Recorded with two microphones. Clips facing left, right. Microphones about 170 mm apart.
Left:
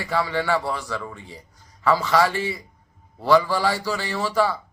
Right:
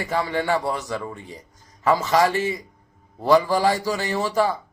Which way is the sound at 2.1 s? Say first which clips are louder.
Right 1 dB; 45° right (ahead or behind).